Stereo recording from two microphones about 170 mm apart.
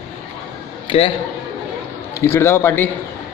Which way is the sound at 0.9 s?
35° left (ahead or behind).